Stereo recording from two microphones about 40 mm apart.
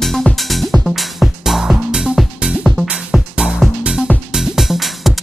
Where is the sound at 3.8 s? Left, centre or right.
Right.